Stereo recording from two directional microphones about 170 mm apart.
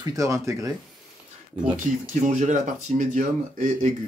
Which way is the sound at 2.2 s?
45° right (ahead or behind).